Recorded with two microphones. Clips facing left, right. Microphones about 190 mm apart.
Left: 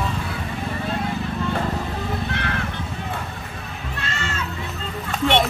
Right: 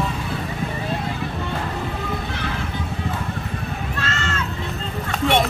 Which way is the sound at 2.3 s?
65° left (ahead or behind).